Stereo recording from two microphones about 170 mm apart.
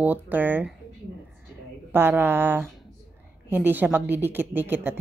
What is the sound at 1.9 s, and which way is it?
Speech, 15° right (ahead or behind).